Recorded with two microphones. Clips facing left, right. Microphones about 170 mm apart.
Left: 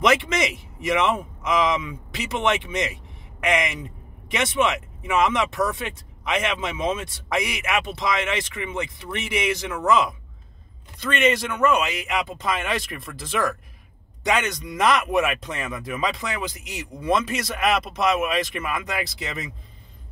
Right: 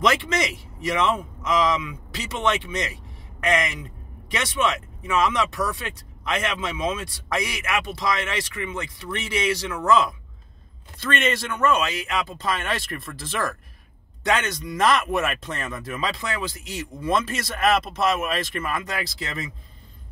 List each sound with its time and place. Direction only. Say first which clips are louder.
0.0 s a man's voice: left 2 dB; 20° left (ahead or behind)